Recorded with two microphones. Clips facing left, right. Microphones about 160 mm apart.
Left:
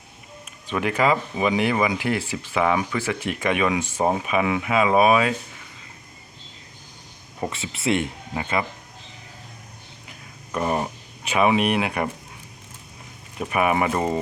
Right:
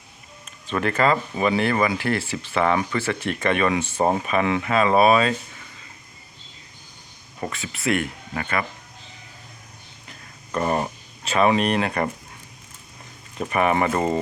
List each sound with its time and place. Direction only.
0.7 s speech: 10° left (ahead or behind)
7.5 s speech: 25° left (ahead or behind)
10.1 s a sound: 5° left (ahead or behind)
11.2 s speech: 10° left (ahead or behind)
13.4 s speech: 5° left (ahead or behind)